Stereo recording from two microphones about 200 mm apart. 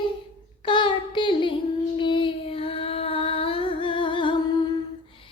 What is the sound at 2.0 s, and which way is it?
Female singing, 25° left (ahead or behind).